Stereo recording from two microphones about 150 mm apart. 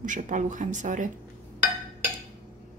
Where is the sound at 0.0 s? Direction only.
60° right (ahead or behind).